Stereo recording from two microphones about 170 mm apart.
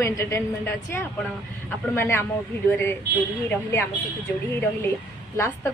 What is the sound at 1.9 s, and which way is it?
Speech, 15° left (ahead or behind).